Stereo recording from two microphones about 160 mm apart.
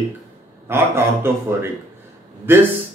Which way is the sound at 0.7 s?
15° right (ahead or behind).